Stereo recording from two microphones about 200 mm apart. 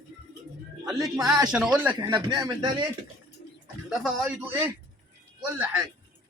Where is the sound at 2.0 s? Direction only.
20° right (ahead or behind).